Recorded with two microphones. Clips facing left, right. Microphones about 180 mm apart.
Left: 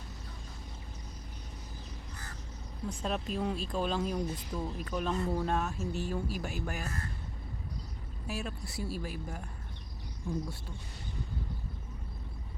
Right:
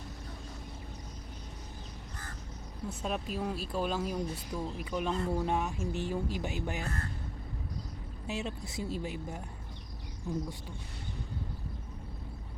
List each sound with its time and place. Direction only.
2.9 s speech: 5° right (ahead or behind)
8.3 s speech: 20° right (ahead or behind)